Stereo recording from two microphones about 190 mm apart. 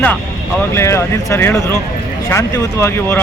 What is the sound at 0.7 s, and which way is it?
Speech, 15° left (ahead or behind).